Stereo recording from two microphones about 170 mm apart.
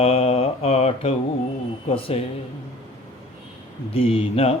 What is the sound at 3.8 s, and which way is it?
Mantra, 35° left (ahead or behind).